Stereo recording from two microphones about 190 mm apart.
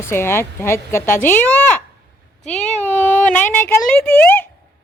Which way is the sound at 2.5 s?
35° left (ahead or behind).